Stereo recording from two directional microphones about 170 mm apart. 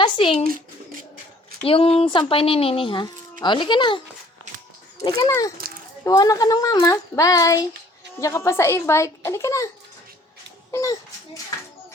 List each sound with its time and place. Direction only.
0.0 s speech: 30° left (ahead or behind)
1.6 s a child's voice: 35° left (ahead or behind); by 9.6 s 15° left (ahead or behind)
10.7 s a child's voice: 20° left (ahead or behind)